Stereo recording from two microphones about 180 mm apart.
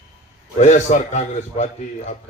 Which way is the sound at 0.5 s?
40° left (ahead or behind).